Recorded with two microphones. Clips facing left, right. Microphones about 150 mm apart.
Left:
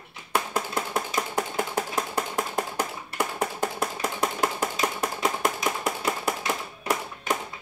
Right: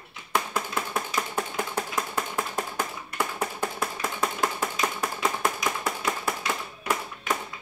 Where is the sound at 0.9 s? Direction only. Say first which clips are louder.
Left 2 dB; 15° left (ahead or behind).